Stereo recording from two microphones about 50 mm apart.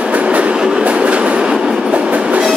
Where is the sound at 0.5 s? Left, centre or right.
Centre.